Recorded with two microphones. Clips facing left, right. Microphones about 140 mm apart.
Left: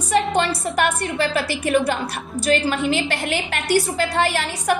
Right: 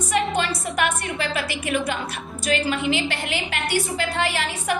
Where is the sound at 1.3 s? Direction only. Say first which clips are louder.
Left 6 dB; 35° left (ahead or behind).